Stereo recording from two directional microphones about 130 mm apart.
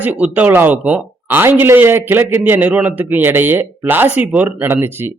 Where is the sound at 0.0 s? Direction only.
10° right (ahead or behind).